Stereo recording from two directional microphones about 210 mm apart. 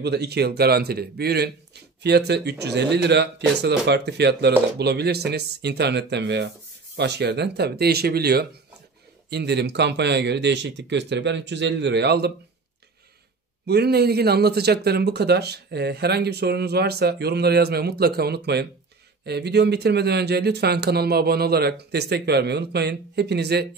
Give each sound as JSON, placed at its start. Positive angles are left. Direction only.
{"t": 0.0, "sound": "a man's voice", "side_deg": -50}
{"t": 13.7, "sound": "a man's voice", "side_deg": -50}